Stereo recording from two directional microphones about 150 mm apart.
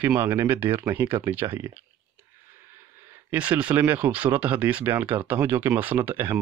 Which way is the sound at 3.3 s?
10° right (ahead or behind).